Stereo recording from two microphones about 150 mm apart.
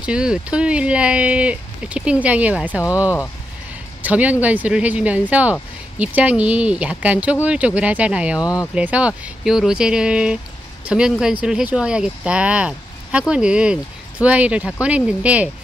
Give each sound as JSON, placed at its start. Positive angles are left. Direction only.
{"t": 0.0, "sound": "speech", "side_deg": -5}
{"t": 8.4, "sound": "speech", "side_deg": 25}
{"t": 8.7, "sound": "speech", "side_deg": -10}